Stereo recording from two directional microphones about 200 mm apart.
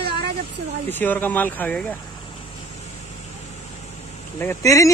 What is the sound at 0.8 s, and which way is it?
Speech, 10° left (ahead or behind).